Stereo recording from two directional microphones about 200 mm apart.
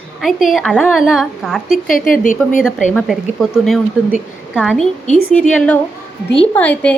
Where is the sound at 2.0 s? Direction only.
40° left (ahead or behind).